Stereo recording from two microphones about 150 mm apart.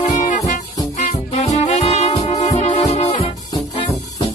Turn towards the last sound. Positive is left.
turn(degrees=50)  # may be behind; listen again after turning